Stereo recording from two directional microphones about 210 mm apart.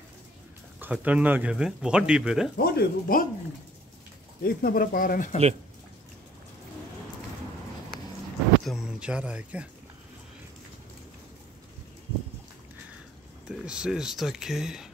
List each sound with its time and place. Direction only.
0.7 s speech: 10° right (ahead or behind)
2.5 s speech: 45° left (ahead or behind)
4.4 s speech: 45° left (ahead or behind)
8.6 s speech: centre (ahead or behind)
13.5 s speech: 5° right (ahead or behind)